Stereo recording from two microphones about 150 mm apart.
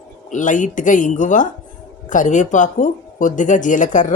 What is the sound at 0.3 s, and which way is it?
Speech, 60° left (ahead or behind).